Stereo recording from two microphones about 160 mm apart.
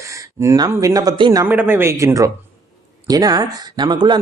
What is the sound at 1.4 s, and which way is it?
Speech, 10° right (ahead or behind).